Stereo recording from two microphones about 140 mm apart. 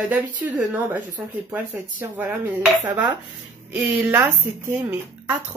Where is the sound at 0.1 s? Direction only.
10° right (ahead or behind).